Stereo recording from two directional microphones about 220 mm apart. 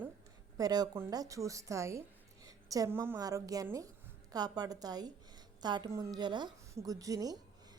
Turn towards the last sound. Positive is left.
turn(degrees=-15)  # may be behind; listen again after turning